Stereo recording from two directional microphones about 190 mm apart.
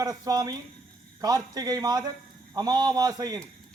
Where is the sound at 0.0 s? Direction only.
20° right (ahead or behind).